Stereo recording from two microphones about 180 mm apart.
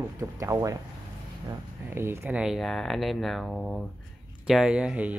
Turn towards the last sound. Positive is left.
turn(degrees=-5)  # may be behind; listen again after turning